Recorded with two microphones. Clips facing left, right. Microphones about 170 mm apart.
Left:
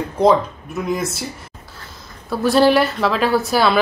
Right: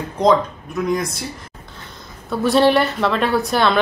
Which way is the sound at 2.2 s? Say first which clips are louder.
Left 1 dB; centre (ahead or behind).